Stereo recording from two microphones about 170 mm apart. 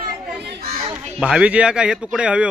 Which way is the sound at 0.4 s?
85° right.